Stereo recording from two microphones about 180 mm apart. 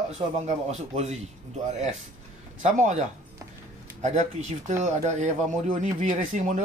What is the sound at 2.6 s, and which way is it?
Speech, 40° right (ahead or behind).